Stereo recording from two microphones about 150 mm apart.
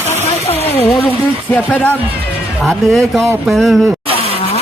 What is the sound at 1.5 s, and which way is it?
A man's voice, 10° left (ahead or behind).